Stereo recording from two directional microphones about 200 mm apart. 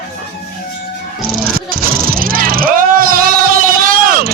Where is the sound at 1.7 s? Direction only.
45° right (ahead or behind).